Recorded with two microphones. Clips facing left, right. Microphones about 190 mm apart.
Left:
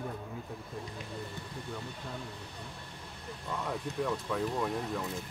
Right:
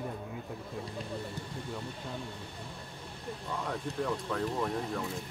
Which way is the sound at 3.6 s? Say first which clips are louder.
Left 1 dB; centre (ahead or behind).